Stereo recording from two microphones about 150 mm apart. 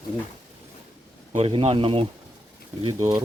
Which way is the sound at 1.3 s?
40° right (ahead or behind).